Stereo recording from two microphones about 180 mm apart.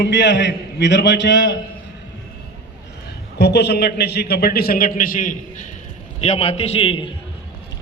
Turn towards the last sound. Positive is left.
turn(degrees=30)  # may be behind; listen again after turning